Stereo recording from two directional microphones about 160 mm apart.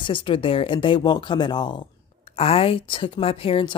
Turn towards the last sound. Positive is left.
turn(degrees=35)  # may be behind; listen again after turning